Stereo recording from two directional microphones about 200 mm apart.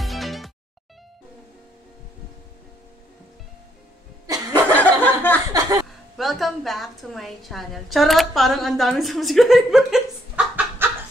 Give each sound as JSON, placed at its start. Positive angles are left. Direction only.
{"t": 0.0, "sound": "music", "side_deg": 0}
{"t": 4.7, "sound": "chuckle", "side_deg": 10}
{"t": 5.5, "sound": "chuckle", "side_deg": -15}
{"t": 6.1, "sound": "a woman's voice", "side_deg": 0}